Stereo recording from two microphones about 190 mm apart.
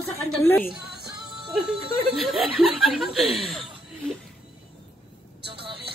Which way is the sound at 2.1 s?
Centre (ahead or behind).